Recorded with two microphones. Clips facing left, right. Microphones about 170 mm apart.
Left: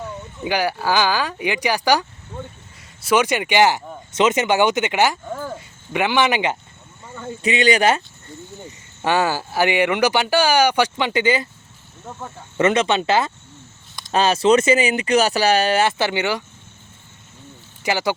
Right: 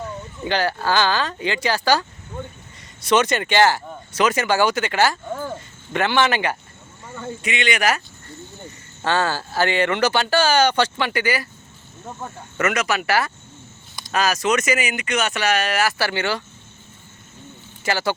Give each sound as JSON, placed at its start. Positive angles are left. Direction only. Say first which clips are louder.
{"t": 0.4, "sound": "speech", "louder": "left 1 dB", "side_deg": 10}
{"t": 7.4, "sound": "speech", "louder": "left 5 dB", "side_deg": 35}
{"t": 9.0, "sound": "speech", "louder": "left 2 dB", "side_deg": 15}
{"t": 12.5, "sound": "speech", "louder": "left 5 dB", "side_deg": 30}
{"t": 17.8, "sound": "speech", "louder": "left 1 dB", "side_deg": 15}